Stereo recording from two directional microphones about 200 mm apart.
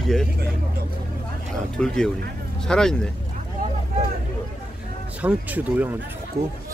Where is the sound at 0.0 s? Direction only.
Centre (ahead or behind).